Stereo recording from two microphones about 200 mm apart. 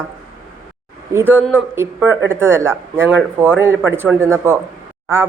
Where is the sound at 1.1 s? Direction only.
10° right (ahead or behind).